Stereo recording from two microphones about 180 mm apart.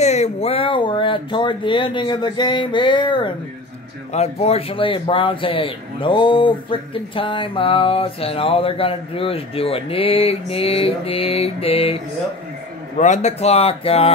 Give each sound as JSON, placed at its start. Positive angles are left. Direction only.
{"t": 0.0, "sound": "speech", "side_deg": 40}